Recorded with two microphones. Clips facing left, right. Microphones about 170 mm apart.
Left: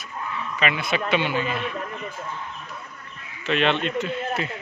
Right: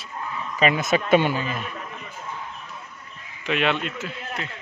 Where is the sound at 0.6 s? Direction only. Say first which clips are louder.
Right 4 dB; 40° right (ahead or behind).